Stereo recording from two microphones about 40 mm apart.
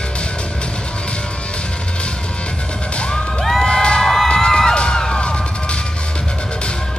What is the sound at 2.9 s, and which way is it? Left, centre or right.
Music, left.